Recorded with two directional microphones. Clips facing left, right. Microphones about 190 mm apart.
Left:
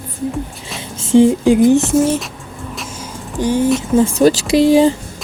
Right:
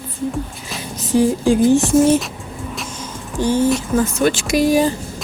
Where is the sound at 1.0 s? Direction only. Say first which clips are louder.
Left 6 dB; 25° left (ahead or behind).